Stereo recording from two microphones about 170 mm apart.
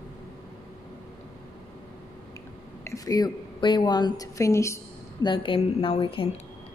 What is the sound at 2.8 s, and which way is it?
A woman's voice, 20° left (ahead or behind).